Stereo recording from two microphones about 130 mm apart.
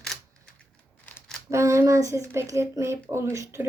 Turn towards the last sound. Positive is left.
turn(degrees=-20)  # may be behind; listen again after turning